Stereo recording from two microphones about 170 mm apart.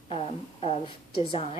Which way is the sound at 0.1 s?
35° left (ahead or behind).